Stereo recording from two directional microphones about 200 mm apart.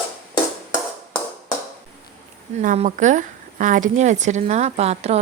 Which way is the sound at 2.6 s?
35° right (ahead or behind).